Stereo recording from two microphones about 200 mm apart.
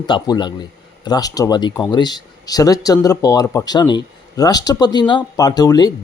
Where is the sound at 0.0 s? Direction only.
20° left (ahead or behind).